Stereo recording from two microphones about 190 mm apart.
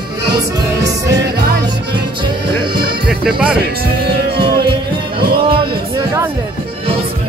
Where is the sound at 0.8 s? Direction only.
65° right (ahead or behind).